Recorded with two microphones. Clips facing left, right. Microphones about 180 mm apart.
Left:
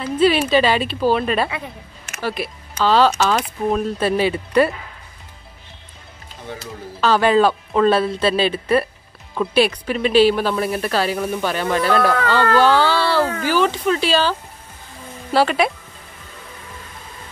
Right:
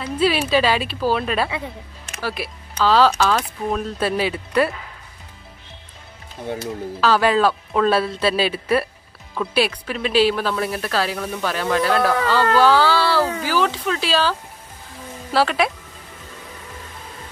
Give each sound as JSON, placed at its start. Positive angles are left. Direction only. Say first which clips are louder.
{"t": 0.2, "sound": "speech", "louder": "left 3 dB", "side_deg": -5}
{"t": 7.0, "sound": "speech", "louder": "left 2 dB", "side_deg": -5}
{"t": 15.3, "sound": "speech", "louder": "left 2 dB", "side_deg": 0}